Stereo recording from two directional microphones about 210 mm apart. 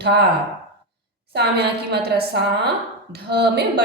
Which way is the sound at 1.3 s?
50° right (ahead or behind).